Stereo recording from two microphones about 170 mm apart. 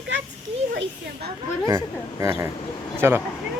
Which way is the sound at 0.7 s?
70° right (ahead or behind).